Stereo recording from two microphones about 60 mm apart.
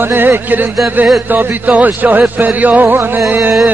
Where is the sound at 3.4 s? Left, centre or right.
Centre.